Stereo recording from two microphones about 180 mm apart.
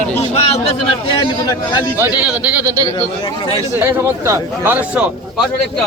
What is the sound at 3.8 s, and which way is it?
Speech, 15° right (ahead or behind).